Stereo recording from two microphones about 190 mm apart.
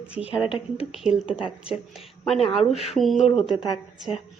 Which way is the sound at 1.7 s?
Centre (ahead or behind).